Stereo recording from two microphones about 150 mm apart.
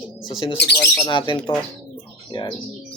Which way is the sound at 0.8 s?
30° left (ahead or behind).